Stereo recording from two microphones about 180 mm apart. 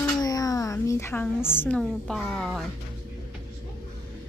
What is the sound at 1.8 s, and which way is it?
Speech, centre (ahead or behind).